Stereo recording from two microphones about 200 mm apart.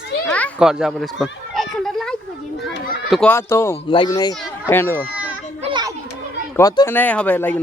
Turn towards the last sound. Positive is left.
turn(degrees=10)  # may be behind; listen again after turning